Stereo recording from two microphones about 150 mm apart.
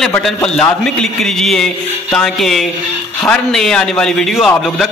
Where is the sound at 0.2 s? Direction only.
5° left (ahead or behind).